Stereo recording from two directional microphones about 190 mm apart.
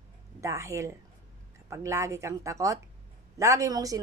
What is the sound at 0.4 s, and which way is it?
A woman's voice, 15° right (ahead or behind).